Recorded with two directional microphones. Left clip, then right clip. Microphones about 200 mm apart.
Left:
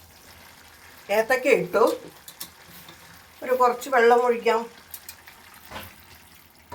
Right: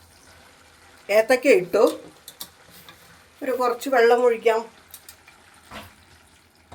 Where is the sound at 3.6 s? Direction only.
55° right (ahead or behind).